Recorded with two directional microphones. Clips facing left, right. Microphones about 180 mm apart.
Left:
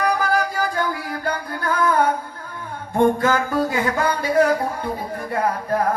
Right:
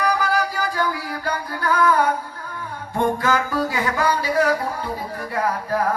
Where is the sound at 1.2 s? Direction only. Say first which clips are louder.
Right 1 dB; 50° left (ahead or behind).